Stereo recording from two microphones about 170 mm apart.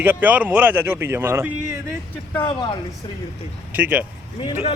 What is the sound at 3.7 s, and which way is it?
Speech, 10° right (ahead or behind).